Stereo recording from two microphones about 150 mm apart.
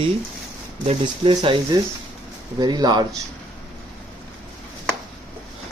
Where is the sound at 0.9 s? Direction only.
30° right (ahead or behind).